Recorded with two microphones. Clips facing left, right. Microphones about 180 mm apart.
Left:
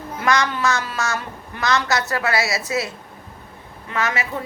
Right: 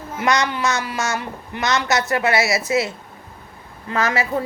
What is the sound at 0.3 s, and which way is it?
A woman's voice, 20° right (ahead or behind).